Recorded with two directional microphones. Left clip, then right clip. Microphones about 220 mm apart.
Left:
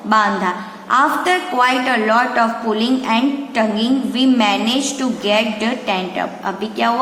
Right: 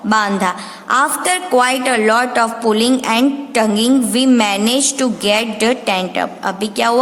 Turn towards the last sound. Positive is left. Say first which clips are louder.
# right 2 dB
turn(degrees=-55)  # may be behind; listen again after turning